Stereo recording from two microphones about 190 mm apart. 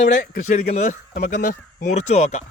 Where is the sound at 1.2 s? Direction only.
50° left (ahead or behind).